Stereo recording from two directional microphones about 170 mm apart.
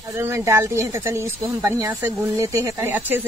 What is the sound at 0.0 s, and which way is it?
Speech, 15° right (ahead or behind).